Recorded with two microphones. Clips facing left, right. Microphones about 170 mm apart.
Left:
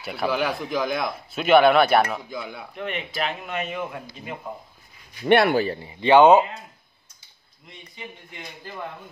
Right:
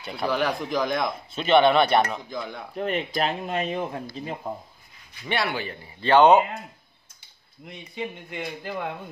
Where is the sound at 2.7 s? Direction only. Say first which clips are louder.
Right 6 dB; 35° right (ahead or behind).